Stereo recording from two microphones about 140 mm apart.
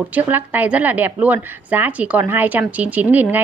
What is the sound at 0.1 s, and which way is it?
A woman's voice, 15° right (ahead or behind).